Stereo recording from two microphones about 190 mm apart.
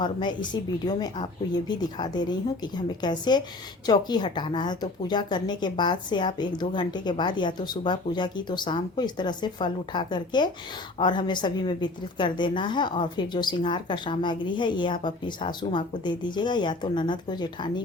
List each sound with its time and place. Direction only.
0.0 s a woman's voice: 25° left (ahead or behind)